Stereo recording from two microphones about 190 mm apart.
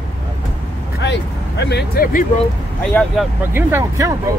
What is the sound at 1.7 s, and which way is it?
Speech, 55° left (ahead or behind).